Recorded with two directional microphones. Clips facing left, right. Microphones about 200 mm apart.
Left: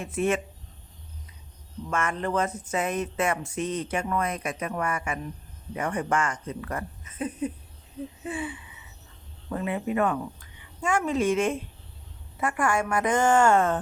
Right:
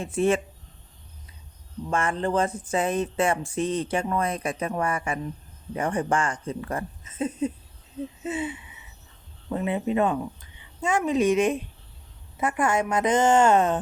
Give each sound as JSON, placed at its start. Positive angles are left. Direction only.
{"t": 0.0, "sound": "speech", "side_deg": -30}
{"t": 1.9, "sound": "speech", "side_deg": -30}